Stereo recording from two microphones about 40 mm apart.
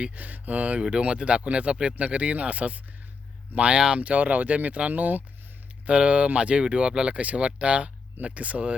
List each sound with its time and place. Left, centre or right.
0.1 s speech: right
0.8 s speech: right
3.8 s speech: right
4.0 s speech: right
5.8 s speech: right